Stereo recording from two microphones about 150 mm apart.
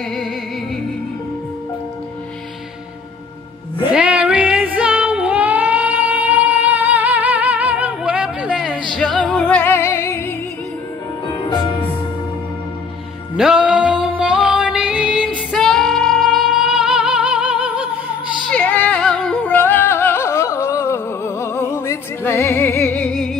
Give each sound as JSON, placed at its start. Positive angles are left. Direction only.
{"t": 3.9, "sound": "music", "side_deg": -10}
{"t": 13.4, "sound": "music", "side_deg": -5}
{"t": 15.2, "sound": "music", "side_deg": 5}
{"t": 18.5, "sound": "music", "side_deg": 10}